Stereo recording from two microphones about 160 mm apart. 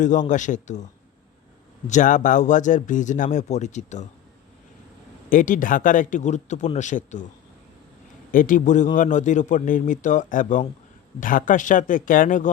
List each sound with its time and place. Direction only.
0.0 s speech: 50° left (ahead or behind)
1.9 s speech: 50° left (ahead or behind)
5.3 s speech: 55° left (ahead or behind)
8.3 s speech: 60° left (ahead or behind)